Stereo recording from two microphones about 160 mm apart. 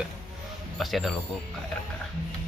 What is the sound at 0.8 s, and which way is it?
Speech, centre (ahead or behind).